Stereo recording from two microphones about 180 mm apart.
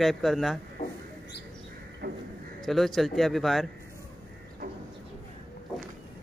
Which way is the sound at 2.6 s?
Centre (ahead or behind).